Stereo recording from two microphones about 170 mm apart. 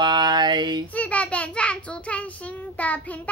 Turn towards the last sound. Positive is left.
turn(degrees=10)  # may be behind; listen again after turning